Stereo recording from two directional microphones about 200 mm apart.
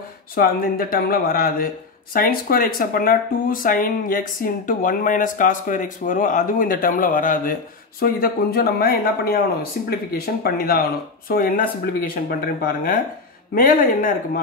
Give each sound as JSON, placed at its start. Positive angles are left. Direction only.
{"t": 0.4, "sound": "speech", "side_deg": 45}